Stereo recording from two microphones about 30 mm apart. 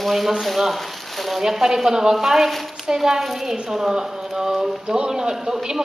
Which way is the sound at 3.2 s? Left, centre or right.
Centre.